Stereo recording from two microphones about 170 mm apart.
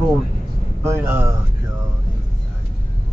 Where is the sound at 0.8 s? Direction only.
15° right (ahead or behind).